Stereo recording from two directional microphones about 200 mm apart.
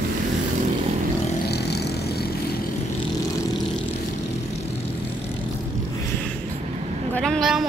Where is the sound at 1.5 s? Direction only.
55° left (ahead or behind).